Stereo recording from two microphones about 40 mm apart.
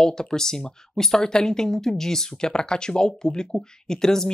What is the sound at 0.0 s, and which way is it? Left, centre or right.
A woman's voice, centre.